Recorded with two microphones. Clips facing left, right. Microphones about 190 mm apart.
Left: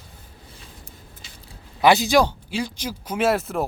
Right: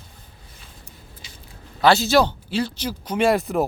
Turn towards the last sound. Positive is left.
turn(degrees=0)  # may be behind; listen again after turning